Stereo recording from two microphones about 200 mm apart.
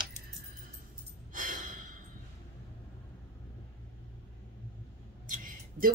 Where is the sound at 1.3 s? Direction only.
40° right (ahead or behind).